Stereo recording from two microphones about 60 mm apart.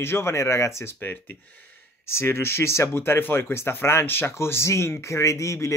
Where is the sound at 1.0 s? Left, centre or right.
Left.